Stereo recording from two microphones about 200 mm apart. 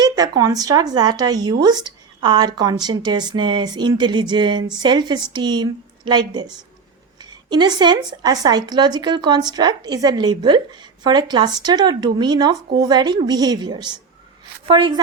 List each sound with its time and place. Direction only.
0.0 s speech: 20° right (ahead or behind)